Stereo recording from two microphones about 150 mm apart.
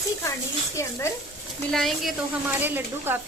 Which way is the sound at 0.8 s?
20° left (ahead or behind).